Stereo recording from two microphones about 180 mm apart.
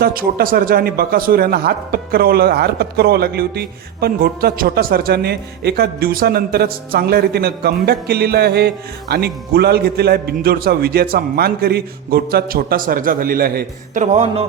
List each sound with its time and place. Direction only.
0.0 s a man's voice: 55° right (ahead or behind); by 14.4 s 35° right (ahead or behind)